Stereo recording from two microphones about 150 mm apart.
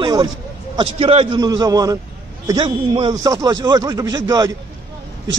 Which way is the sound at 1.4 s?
25° right (ahead or behind).